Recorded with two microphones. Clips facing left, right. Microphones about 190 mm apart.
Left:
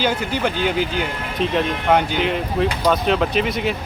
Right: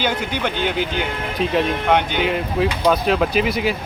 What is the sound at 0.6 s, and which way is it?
Speech, 55° right (ahead or behind).